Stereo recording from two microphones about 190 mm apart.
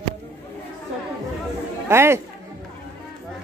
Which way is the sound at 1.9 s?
15° right (ahead or behind).